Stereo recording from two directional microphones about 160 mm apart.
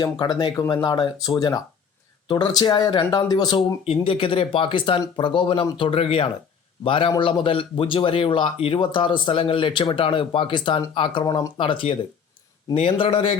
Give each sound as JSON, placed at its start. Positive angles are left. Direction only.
{"t": 0.0, "sound": "a man's voice", "side_deg": 25}